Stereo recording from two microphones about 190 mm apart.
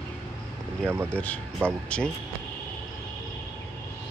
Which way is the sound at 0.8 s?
10° right (ahead or behind).